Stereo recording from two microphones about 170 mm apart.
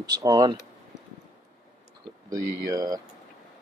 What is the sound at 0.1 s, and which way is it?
Speech, 20° right (ahead or behind).